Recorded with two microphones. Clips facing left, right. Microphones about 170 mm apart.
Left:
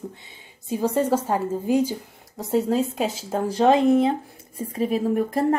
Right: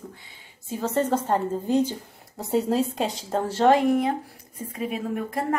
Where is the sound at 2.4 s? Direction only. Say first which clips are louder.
Left 1 dB; centre (ahead or behind).